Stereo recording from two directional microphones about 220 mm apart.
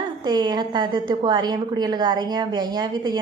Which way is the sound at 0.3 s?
20° right (ahead or behind).